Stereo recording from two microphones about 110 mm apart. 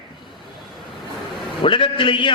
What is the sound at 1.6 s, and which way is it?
Speech, 50° left (ahead or behind).